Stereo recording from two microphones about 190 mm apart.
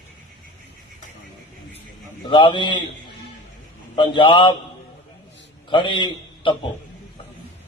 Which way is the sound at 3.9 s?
25° left (ahead or behind).